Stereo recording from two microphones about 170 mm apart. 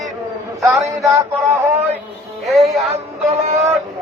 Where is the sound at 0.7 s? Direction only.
20° right (ahead or behind).